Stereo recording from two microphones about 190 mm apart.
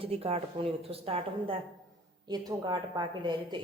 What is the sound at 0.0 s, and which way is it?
Speech, 30° right (ahead or behind).